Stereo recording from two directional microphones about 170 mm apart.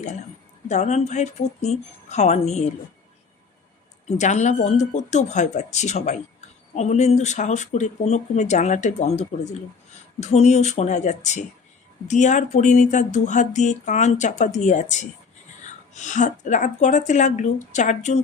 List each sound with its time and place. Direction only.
0.7 s speech: 40° left (ahead or behind)
4.2 s speech: 45° left (ahead or behind)